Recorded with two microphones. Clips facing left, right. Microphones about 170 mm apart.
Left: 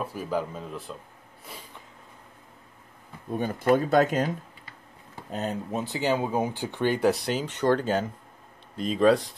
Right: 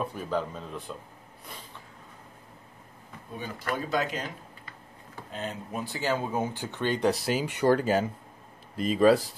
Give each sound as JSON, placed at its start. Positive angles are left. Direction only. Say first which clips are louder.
{"t": 0.0, "sound": "speech", "louder": "left 1 dB", "side_deg": 5}
{"t": 3.3, "sound": "speech", "louder": "left 10 dB", "side_deg": 50}
{"t": 5.3, "sound": "speech", "louder": "left 5 dB", "side_deg": 40}
{"t": 5.7, "sound": "speech", "louder": "left 2 dB", "side_deg": 20}
{"t": 7.1, "sound": "speech", "louder": "left 1 dB", "side_deg": -5}